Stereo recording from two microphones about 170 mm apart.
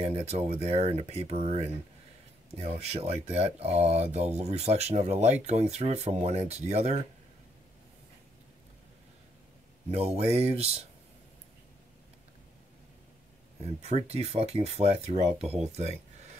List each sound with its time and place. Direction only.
0.0 s speech: 40° right (ahead or behind)
9.9 s speech: 35° right (ahead or behind)
13.7 s speech: 40° right (ahead or behind)